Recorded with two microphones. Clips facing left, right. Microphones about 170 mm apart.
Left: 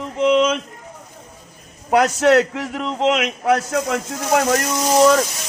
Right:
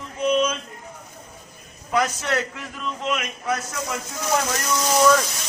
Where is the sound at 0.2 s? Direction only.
90° left.